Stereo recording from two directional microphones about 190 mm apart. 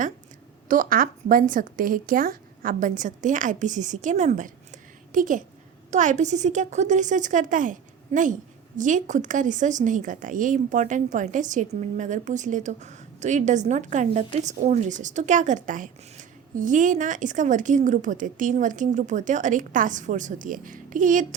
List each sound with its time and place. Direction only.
0.7 s speech: 45° right (ahead or behind)